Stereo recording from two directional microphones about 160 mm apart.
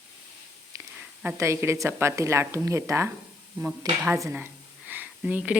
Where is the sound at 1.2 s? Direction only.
15° right (ahead or behind).